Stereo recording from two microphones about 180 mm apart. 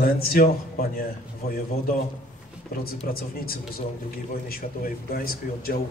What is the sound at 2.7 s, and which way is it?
A man's voice, 55° left (ahead or behind).